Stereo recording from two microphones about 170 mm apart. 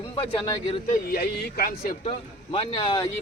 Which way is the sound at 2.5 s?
30° left (ahead or behind).